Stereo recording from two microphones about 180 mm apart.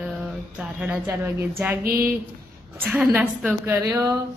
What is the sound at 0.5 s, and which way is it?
A woman's voice, 5° right (ahead or behind).